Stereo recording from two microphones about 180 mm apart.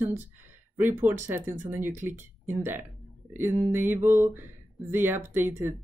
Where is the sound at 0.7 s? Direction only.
10° right (ahead or behind).